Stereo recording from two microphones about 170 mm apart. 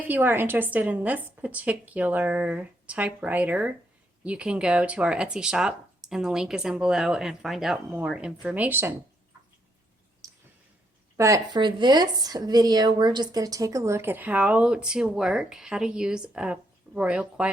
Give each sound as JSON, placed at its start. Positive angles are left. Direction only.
{"t": 0.1, "sound": "a woman's voice", "side_deg": -10}
{"t": 11.2, "sound": "a woman's voice", "side_deg": -20}